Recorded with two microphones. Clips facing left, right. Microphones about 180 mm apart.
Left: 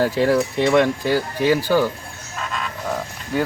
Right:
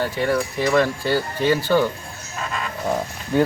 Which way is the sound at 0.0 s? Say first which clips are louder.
Left 5 dB; 40° left (ahead or behind).